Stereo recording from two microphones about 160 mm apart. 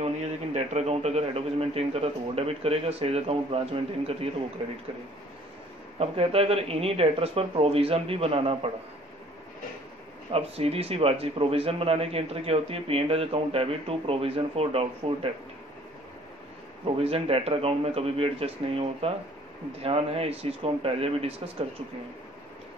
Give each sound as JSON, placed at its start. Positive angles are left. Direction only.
{"t": 0.0, "sound": "speech", "side_deg": -40}
{"t": 5.9, "sound": "speech", "side_deg": -40}
{"t": 10.3, "sound": "speech", "side_deg": -40}
{"t": 16.8, "sound": "speech", "side_deg": -35}